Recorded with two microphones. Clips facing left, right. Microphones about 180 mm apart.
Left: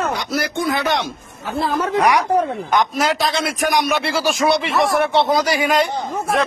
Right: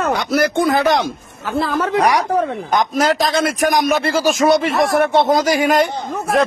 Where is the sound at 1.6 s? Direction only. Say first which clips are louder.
Right 1 dB; 80° right.